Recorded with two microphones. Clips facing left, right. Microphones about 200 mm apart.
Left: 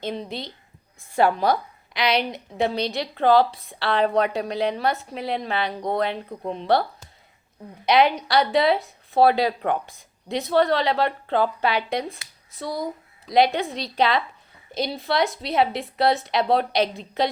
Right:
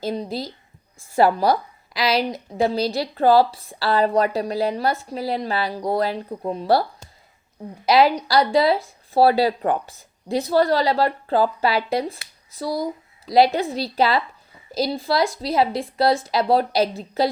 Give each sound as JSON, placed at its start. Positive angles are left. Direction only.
{"t": 0.0, "sound": "a woman's voice", "side_deg": -40}
{"t": 1.5, "sound": "a woman's voice", "side_deg": 0}
{"t": 7.9, "sound": "a woman's voice", "side_deg": 0}